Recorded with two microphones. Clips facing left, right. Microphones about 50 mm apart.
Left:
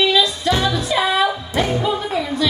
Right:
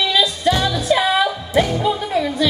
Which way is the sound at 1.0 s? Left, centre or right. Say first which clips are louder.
Even; centre.